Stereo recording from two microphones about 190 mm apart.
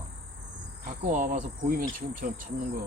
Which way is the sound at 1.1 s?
45° right (ahead or behind).